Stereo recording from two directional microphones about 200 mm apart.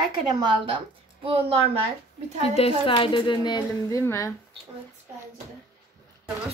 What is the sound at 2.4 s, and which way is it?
A woman's voice, 30° left (ahead or behind).